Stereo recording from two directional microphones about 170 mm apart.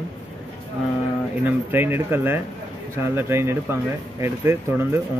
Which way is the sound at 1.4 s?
15° right (ahead or behind).